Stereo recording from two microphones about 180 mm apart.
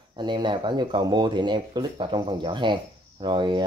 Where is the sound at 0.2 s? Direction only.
25° right (ahead or behind).